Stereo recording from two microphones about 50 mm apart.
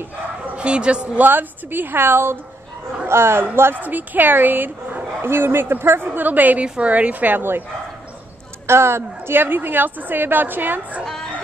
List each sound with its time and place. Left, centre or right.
0.6 s speech: right
1.2 s a woman's voice: right
3.8 s a woman's voice: right
5.2 s a woman's voice: right
6.0 s a woman's voice: right
8.6 s speech: right
9.4 s a woman's voice: right